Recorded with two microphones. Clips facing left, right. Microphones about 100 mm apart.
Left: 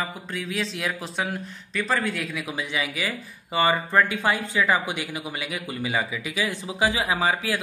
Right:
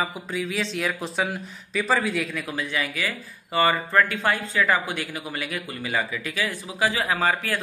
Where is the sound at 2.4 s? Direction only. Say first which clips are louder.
Right 1 dB; 15° left (ahead or behind).